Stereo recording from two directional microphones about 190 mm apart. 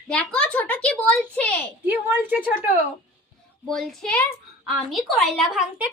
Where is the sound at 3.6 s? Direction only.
Centre (ahead or behind).